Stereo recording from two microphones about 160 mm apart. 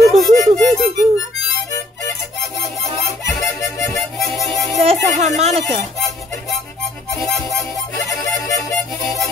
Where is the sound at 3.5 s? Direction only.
15° left (ahead or behind).